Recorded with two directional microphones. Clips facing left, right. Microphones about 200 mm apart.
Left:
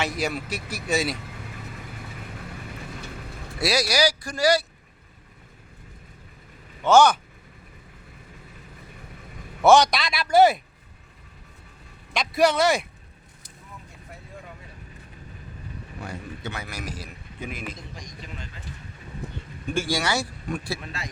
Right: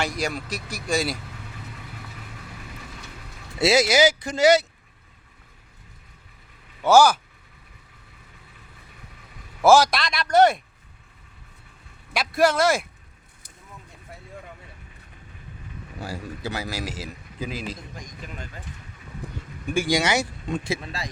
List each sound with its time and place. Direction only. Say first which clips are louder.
0.0 s speech: even; 5° left (ahead or behind)
3.6 s speech: right 5 dB; 25° right (ahead or behind)
6.8 s speech: right 1 dB; 5° right (ahead or behind)
9.6 s speech: even; centre (ahead or behind)
12.1 s speech: even; centre (ahead or behind)
16.0 s a man's voice: right 3 dB; 30° right (ahead or behind)
19.7 s speech: right 3 dB; 15° right (ahead or behind)
20.9 s speech: right 2 dB; 35° right (ahead or behind)